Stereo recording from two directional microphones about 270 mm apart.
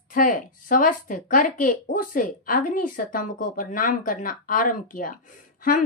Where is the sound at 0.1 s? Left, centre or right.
Left.